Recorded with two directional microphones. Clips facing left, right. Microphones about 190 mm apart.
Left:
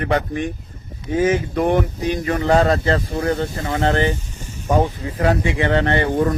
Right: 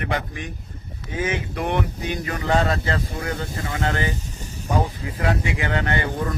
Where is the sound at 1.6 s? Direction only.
35° left (ahead or behind).